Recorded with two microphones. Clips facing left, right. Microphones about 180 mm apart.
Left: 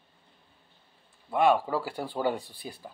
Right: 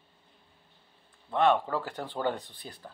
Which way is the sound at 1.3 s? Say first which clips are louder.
Left 1 dB; 10° left (ahead or behind).